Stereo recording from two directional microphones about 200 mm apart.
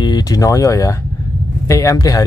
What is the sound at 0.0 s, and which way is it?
Speech, 20° left (ahead or behind).